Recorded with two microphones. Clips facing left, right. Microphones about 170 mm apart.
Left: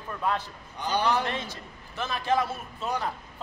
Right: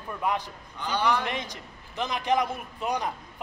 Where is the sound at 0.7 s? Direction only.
15° left (ahead or behind).